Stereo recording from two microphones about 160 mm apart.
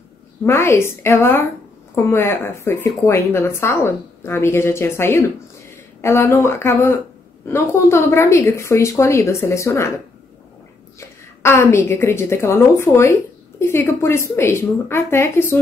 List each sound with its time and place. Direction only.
0.5 s speech: 15° left (ahead or behind)
11.0 s speech: 15° left (ahead or behind)